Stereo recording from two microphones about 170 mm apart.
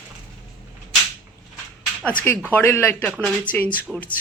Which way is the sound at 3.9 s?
5° right (ahead or behind).